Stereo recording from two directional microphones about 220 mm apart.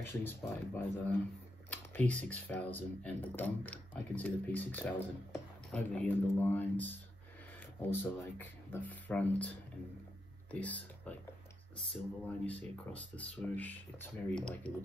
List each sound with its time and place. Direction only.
0.0 s speech: 10° left (ahead or behind)
10.5 s speech: 5° left (ahead or behind)